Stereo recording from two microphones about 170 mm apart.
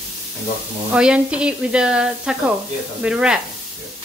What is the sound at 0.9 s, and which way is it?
Speech, 5° right (ahead or behind).